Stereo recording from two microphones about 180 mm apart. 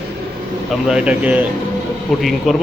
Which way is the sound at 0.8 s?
5° right (ahead or behind).